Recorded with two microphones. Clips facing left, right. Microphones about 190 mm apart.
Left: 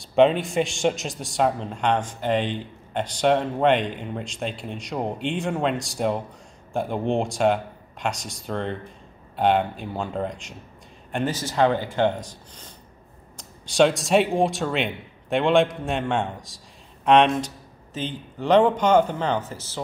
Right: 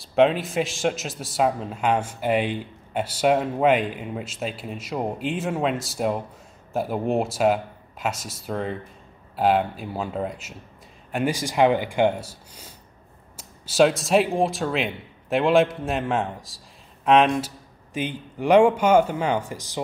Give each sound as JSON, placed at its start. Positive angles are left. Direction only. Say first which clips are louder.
{"t": 0.0, "sound": "a man's voice", "louder": "left 1 dB", "side_deg": 0}